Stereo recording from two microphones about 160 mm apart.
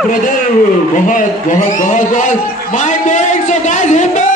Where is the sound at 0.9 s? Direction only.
55° left (ahead or behind).